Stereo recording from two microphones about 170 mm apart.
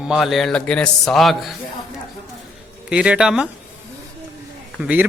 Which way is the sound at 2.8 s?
5° right (ahead or behind).